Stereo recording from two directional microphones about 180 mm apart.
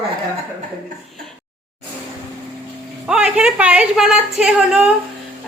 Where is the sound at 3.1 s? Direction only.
5° right (ahead or behind).